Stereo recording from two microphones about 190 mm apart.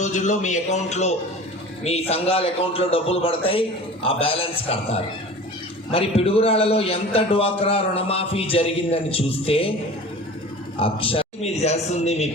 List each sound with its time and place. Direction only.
0.0 s a man's voice: 40° left (ahead or behind)
10.8 s a man's voice: 30° left (ahead or behind)